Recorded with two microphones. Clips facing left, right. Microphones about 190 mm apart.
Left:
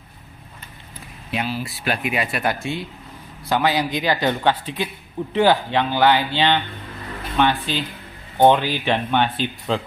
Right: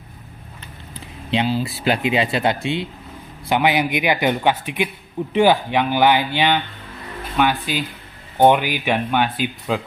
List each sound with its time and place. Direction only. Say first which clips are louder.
1.3 s speech: right 5 dB; 25° right (ahead or behind); by 9.8 s 5° right (ahead or behind)